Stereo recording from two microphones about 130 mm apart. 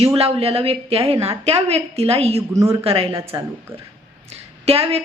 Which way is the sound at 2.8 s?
50° right (ahead or behind).